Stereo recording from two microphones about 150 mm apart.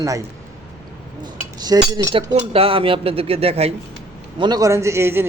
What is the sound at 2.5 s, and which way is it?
Speech, 40° right (ahead or behind).